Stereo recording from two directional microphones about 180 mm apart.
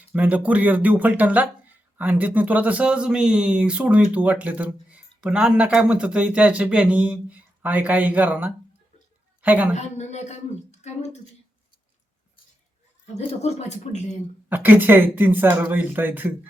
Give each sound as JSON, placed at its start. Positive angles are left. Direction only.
{"t": 0.1, "sound": "a woman's voice", "side_deg": -10}
{"t": 9.7, "sound": "speech", "side_deg": 40}
{"t": 13.1, "sound": "speech", "side_deg": 35}
{"t": 14.5, "sound": "speech", "side_deg": -10}